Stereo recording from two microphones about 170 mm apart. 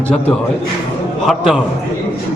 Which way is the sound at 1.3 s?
Centre (ahead or behind).